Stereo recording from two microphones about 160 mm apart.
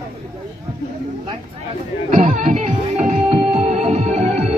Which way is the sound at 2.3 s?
50° right (ahead or behind).